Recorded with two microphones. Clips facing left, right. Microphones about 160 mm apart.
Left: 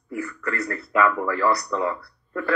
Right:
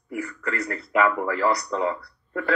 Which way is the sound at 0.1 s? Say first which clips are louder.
Left 1 dB; 20° right (ahead or behind).